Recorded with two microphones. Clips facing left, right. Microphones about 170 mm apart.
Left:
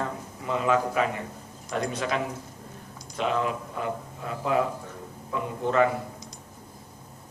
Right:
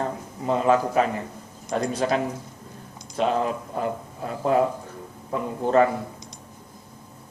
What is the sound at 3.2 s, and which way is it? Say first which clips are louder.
A man's voice: right 4 dB; 35° right (ahead or behind).